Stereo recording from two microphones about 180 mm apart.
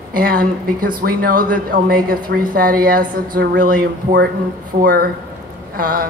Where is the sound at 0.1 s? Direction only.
55° right (ahead or behind).